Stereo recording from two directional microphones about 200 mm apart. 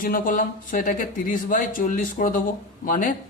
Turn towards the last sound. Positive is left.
turn(degrees=40)  # may be behind; listen again after turning